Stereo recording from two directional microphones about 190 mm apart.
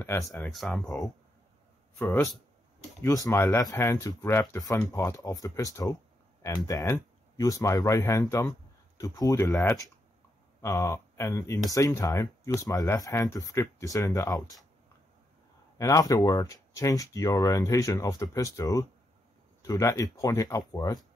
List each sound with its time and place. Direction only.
0.0 s speech: 15° left (ahead or behind)
0.4 s speech: 5° left (ahead or behind)
0.8 s speech: 20° left (ahead or behind)
15.8 s speech: 15° left (ahead or behind)